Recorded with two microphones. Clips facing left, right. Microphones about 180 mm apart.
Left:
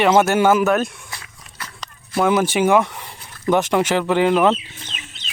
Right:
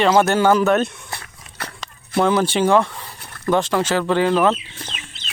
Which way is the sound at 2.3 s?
15° left (ahead or behind).